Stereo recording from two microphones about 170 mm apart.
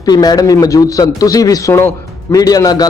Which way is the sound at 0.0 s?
25° left (ahead or behind).